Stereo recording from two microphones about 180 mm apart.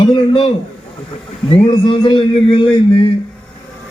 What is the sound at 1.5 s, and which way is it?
A man's voice, 25° left (ahead or behind).